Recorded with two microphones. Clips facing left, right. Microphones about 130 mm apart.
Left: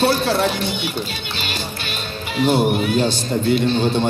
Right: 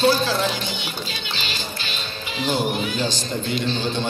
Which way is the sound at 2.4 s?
50° left (ahead or behind).